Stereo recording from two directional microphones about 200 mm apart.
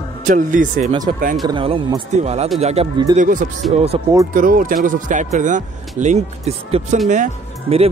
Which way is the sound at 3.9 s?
30° right (ahead or behind).